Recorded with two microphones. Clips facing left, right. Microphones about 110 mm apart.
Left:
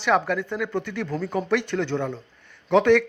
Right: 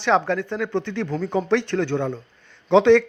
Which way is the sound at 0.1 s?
15° right (ahead or behind).